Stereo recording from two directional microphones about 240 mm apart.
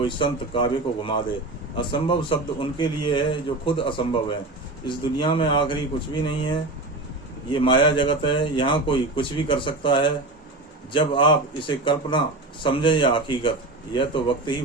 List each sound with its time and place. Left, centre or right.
0.0 s a man's voice: left